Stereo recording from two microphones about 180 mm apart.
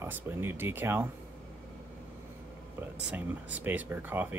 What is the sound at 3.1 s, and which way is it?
Speech, 10° right (ahead or behind).